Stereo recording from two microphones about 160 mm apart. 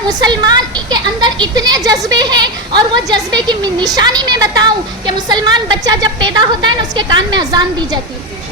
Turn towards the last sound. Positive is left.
turn(degrees=-25)  # may be behind; listen again after turning